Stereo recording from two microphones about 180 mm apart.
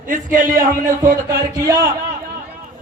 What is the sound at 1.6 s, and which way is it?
Speech, 20° right (ahead or behind).